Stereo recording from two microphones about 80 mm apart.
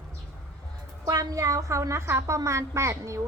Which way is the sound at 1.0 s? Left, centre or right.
Right.